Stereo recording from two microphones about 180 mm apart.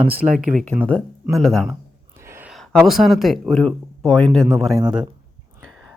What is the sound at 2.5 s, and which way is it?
Speech, centre (ahead or behind).